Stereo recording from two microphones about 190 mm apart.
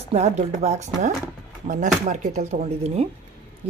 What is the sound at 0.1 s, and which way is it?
Speech, 35° right (ahead or behind).